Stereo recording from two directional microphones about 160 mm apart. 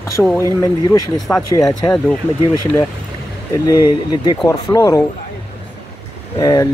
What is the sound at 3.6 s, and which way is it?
Speech, 25° left (ahead or behind).